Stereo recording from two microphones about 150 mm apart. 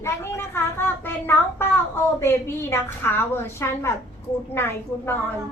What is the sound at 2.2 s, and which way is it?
A woman's voice, 15° left (ahead or behind).